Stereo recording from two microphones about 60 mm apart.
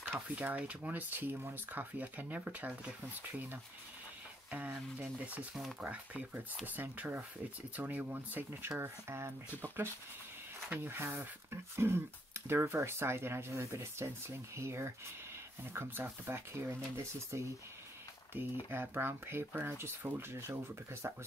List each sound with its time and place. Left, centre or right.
0.0 s speech: right
4.5 s speech: right
18.3 s speech: right